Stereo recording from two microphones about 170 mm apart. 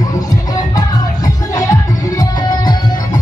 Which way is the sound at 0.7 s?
20° left (ahead or behind).